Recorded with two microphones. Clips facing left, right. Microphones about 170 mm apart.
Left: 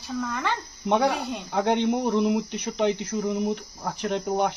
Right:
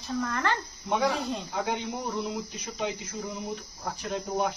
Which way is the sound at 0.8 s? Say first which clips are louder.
Left 5 dB; 65° left (ahead or behind).